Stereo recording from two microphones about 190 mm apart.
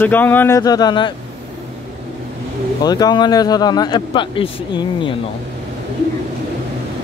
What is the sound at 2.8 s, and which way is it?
Speech, 20° left (ahead or behind).